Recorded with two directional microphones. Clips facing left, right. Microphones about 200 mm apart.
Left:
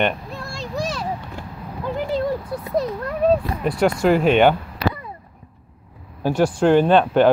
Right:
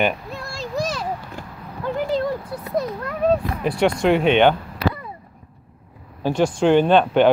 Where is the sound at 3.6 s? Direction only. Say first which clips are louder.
Even; centre (ahead or behind).